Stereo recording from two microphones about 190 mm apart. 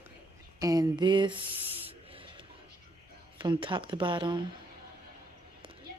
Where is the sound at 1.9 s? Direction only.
30° right (ahead or behind).